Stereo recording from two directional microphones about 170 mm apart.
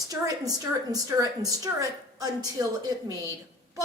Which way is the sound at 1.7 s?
20° right (ahead or behind).